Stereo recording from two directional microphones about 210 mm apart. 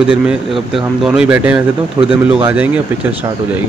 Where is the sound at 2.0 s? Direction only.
25° right (ahead or behind).